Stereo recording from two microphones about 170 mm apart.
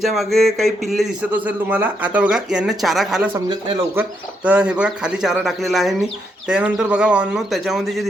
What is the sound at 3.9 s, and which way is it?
Speech, 5° right (ahead or behind).